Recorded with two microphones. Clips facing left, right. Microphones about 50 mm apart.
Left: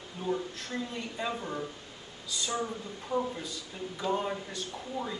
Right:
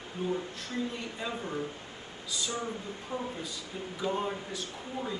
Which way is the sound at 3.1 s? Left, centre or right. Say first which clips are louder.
Left 6 dB; centre.